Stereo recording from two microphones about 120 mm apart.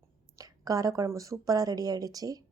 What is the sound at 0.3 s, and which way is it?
Speech, 30° right (ahead or behind).